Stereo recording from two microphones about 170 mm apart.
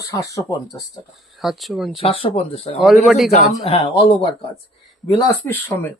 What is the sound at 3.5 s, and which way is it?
Speech, 35° left (ahead or behind).